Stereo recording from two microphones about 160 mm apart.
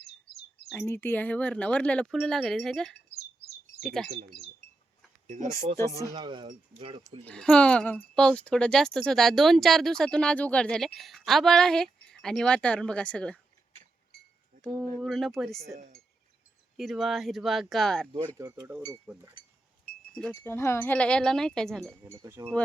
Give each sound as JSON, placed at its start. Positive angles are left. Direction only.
{"t": 0.7, "sound": "speech", "side_deg": 15}
{"t": 5.7, "sound": "speech", "side_deg": 20}
{"t": 6.1, "sound": "speech", "side_deg": -30}
{"t": 7.3, "sound": "speech", "side_deg": 5}
{"t": 14.6, "sound": "speech", "side_deg": 0}
{"t": 16.7, "sound": "speech", "side_deg": 0}
{"t": 18.3, "sound": "speech", "side_deg": -15}
{"t": 19.4, "sound": "wind chime", "side_deg": 30}
{"t": 20.1, "sound": "speech", "side_deg": 10}
{"t": 21.8, "sound": "speech", "side_deg": -15}